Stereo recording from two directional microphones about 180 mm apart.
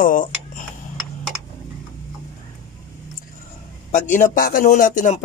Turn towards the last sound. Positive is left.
turn(degrees=45)  # may be behind; listen again after turning